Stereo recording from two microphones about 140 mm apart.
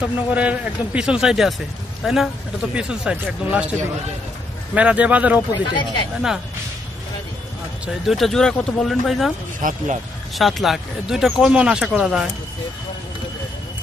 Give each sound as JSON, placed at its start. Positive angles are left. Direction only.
{"t": 0.0, "sound": "speech", "side_deg": -10}
{"t": 2.7, "sound": "speech", "side_deg": -5}
{"t": 4.7, "sound": "speech", "side_deg": -10}
{"t": 5.5, "sound": "speech", "side_deg": 35}
{"t": 7.8, "sound": "speech", "side_deg": 0}
{"t": 9.6, "sound": "speech", "side_deg": -70}
{"t": 10.3, "sound": "speech", "side_deg": 0}